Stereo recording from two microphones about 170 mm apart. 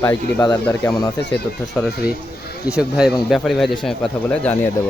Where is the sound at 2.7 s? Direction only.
5° right (ahead or behind).